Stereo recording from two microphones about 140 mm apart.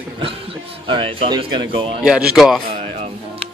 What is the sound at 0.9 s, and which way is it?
Speech, 40° right (ahead or behind).